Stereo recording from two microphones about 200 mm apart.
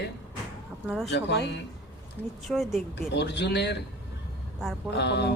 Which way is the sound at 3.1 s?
60° left (ahead or behind).